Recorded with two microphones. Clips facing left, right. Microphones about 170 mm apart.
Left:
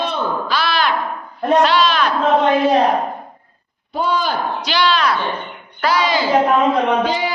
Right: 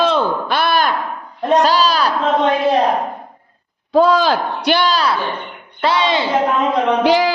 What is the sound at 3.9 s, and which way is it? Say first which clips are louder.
Speech: right 7 dB; 90° right.